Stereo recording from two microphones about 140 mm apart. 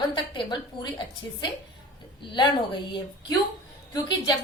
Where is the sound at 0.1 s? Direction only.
35° left (ahead or behind).